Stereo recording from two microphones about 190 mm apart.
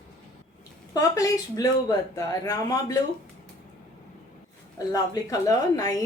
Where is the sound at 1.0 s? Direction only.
15° left (ahead or behind).